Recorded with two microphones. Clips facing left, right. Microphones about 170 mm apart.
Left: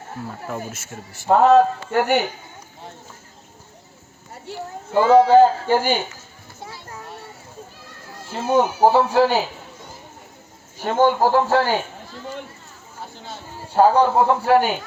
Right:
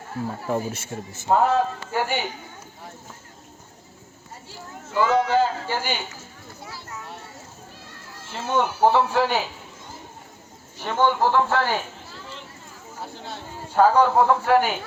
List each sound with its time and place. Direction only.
0.5 s speech: 30° right (ahead or behind)
1.3 s a man's voice: 70° left (ahead or behind)
4.5 s speech: 65° left (ahead or behind)
4.9 s a man's voice: 30° left (ahead or behind)
5.4 s a man's voice: 50° left (ahead or behind)
8.3 s speech: 35° left (ahead or behind)
10.8 s speech: 45° left (ahead or behind)
13.7 s a man's voice: 30° left (ahead or behind)